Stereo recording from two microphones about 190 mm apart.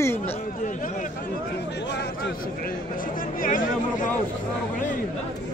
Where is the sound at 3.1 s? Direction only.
45° left (ahead or behind).